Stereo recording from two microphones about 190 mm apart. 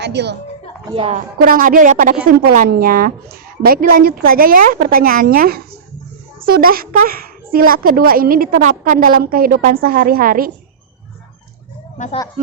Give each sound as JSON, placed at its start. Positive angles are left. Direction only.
{"t": 0.0, "sound": "a woman's voice", "side_deg": -65}
{"t": 0.9, "sound": "a woman's voice", "side_deg": -25}
{"t": 1.1, "sound": "a woman's voice", "side_deg": -45}